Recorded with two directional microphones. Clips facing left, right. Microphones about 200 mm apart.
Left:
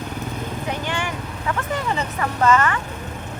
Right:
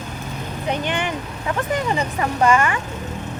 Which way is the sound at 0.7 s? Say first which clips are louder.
Right 5 dB; 20° right (ahead or behind).